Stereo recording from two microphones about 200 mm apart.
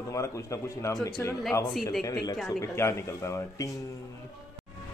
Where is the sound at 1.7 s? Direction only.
Centre (ahead or behind).